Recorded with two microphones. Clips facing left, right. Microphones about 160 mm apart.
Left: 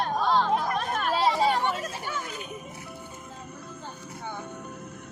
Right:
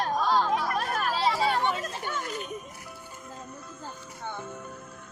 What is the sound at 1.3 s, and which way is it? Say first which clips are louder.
Chatter: left 2 dB; 15° left (ahead or behind).